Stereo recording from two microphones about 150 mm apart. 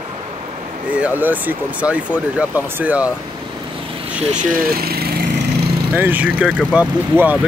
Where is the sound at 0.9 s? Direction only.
10° right (ahead or behind).